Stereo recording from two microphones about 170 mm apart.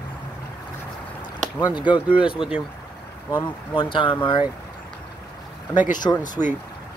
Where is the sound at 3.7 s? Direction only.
30° left (ahead or behind).